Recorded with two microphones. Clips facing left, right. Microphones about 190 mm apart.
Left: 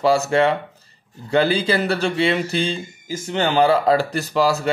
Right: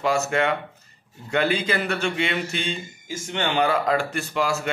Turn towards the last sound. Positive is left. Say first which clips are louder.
# left 6 dB
turn(degrees=35)  # may be behind; listen again after turning